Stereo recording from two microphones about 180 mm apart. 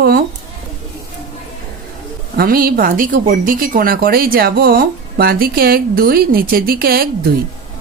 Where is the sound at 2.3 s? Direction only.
55° right (ahead or behind).